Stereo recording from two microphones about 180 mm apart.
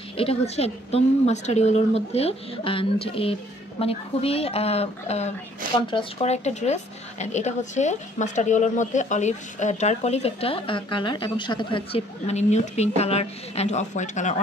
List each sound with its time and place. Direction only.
0.2 s speech: 35° left (ahead or behind)